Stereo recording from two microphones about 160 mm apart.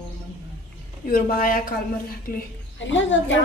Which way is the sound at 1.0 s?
65° left (ahead or behind).